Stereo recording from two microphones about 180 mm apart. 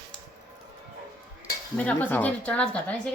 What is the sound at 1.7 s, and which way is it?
Speech, 5° left (ahead or behind).